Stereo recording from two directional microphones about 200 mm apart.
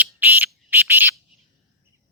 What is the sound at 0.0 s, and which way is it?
Frog, 10° right (ahead or behind).